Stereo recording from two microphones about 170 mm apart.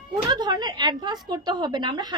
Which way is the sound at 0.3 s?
25° right (ahead or behind).